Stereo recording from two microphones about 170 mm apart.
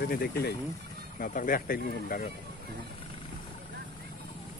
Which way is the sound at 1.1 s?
55° left (ahead or behind).